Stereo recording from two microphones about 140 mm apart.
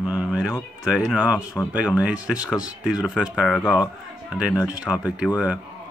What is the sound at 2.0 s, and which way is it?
Speech, 10° right (ahead or behind).